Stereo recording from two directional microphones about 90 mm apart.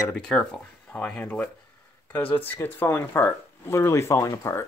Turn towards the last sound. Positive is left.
turn(degrees=30)  # may be behind; listen again after turning